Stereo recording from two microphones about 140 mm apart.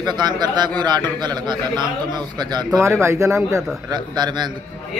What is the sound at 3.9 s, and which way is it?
Speech, 30° right (ahead or behind).